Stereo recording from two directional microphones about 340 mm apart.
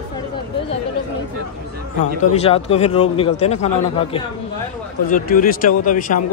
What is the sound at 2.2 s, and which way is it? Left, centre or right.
Speech, centre.